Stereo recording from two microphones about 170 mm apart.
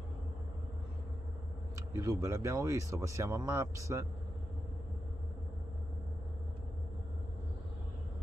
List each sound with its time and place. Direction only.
2.0 s speech: 15° right (ahead or behind)